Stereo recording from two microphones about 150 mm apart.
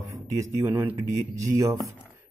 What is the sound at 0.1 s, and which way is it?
Speech, 20° right (ahead or behind).